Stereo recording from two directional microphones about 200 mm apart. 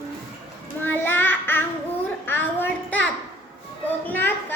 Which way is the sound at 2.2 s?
10° left (ahead or behind).